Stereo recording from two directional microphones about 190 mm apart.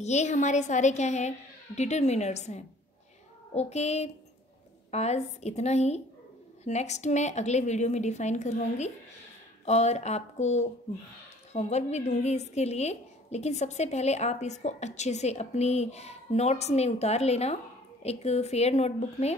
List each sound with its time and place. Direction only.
0.0 s a woman's voice: 35° left (ahead or behind)